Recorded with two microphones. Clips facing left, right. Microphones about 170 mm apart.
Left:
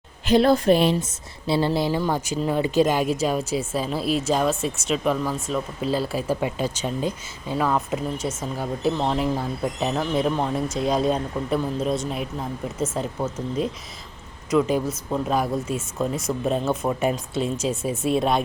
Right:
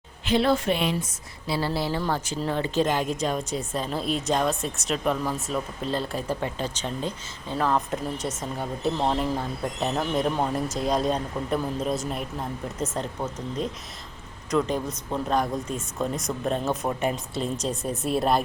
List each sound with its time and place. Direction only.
0.3 s a woman's voice: 40° left (ahead or behind)
1.5 s a woman's voice: 25° left (ahead or behind); by 13.1 s centre (ahead or behind)
14.5 s speech: 5° left (ahead or behind)